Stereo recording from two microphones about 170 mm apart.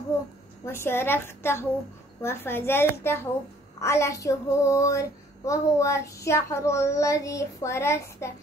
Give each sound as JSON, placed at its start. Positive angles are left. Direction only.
{"t": 0.7, "sound": "speech", "side_deg": 15}